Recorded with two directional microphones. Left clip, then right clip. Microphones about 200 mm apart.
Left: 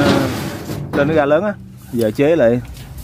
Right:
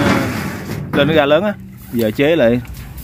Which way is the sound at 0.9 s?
5° left (ahead or behind).